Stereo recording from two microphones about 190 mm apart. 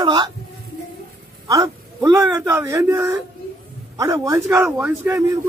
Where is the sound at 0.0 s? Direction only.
25° right (ahead or behind).